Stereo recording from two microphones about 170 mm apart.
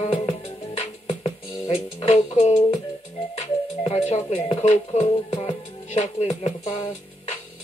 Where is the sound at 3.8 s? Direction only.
40° left (ahead or behind).